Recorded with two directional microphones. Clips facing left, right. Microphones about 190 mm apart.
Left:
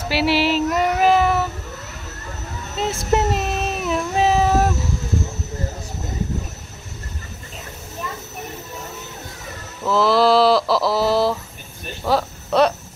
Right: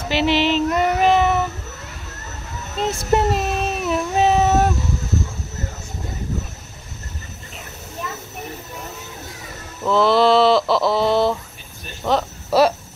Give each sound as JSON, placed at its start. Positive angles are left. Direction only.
{"t": 0.1, "sound": "child singing", "side_deg": 5}
{"t": 2.8, "sound": "cat", "side_deg": 0}
{"t": 9.8, "sound": "a sound", "side_deg": 0}
{"t": 12.0, "sound": "cricket", "side_deg": 0}